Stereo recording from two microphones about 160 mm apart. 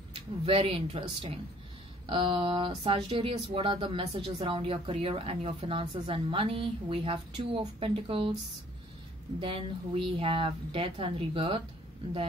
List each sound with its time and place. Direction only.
0.1 s speech: 35° right (ahead or behind)
9.4 s speech: 35° right (ahead or behind)